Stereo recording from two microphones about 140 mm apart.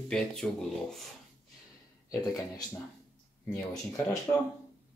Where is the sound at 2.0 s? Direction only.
25° left (ahead or behind).